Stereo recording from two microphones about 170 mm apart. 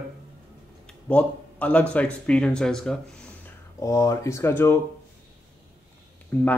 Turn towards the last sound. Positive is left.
turn(degrees=10)  # may be behind; listen again after turning